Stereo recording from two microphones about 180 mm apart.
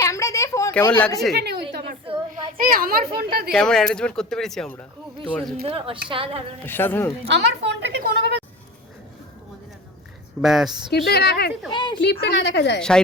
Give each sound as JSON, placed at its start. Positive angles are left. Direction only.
{"t": 0.0, "sound": "a sound", "side_deg": 15}
{"t": 1.3, "sound": "a woman's voice", "side_deg": -65}
{"t": 2.6, "sound": "a woman's voice", "side_deg": -55}
{"t": 3.5, "sound": "speech", "side_deg": 5}
{"t": 5.6, "sound": "a woman's voice", "side_deg": -30}
{"t": 6.7, "sound": "speech", "side_deg": 10}
{"t": 7.3, "sound": "a woman's voice", "side_deg": -75}
{"t": 10.4, "sound": "speech", "side_deg": 0}
{"t": 10.9, "sound": "a woman's voice", "side_deg": 65}
{"t": 11.7, "sound": "a woman's voice", "side_deg": 25}
{"t": 11.9, "sound": "a woman's voice", "side_deg": 70}